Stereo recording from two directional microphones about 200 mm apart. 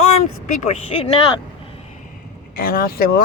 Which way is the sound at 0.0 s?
40° left (ahead or behind).